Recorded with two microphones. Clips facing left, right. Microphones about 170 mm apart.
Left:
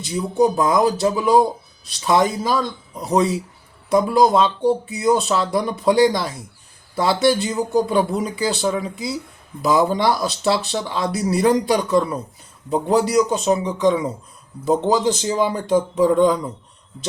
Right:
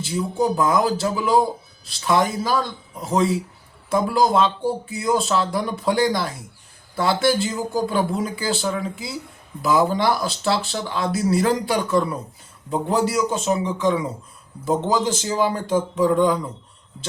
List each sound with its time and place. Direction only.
0.0 s speech: 20° left (ahead or behind)
3.8 s speech: 20° left (ahead or behind)